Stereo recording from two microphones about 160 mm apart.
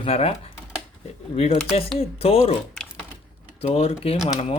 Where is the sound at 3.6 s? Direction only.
40° left (ahead or behind).